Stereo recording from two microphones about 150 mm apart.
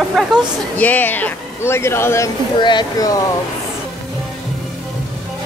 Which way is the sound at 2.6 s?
30° left (ahead or behind).